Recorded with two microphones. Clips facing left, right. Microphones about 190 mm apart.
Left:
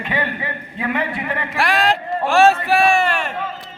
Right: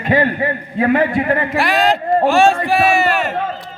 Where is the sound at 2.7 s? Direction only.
5° right (ahead or behind).